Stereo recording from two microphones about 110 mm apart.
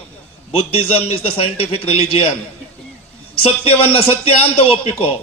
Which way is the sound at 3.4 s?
60° left (ahead or behind).